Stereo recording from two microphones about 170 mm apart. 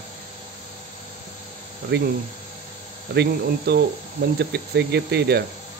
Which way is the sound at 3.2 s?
75° right (ahead or behind).